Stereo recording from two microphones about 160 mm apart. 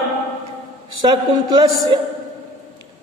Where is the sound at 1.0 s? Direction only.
25° right (ahead or behind).